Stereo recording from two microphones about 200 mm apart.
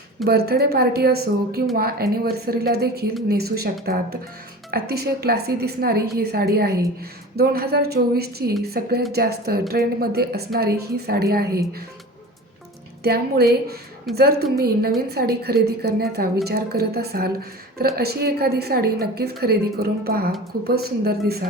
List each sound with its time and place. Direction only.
0.3 s a woman's voice: 50° right (ahead or behind)
13.0 s a woman's voice: 50° right (ahead or behind)
14.1 s a woman's voice: centre (ahead or behind)
14.6 s a woman's voice: 50° right (ahead or behind)